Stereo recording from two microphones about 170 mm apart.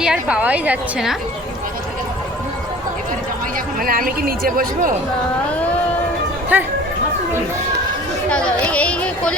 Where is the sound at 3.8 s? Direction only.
60° right (ahead or behind).